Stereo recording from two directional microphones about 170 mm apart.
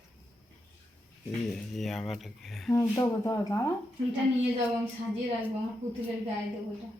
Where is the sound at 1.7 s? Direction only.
Centre (ahead or behind).